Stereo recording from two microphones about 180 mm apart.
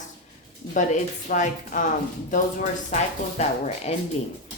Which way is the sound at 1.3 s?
45° left (ahead or behind).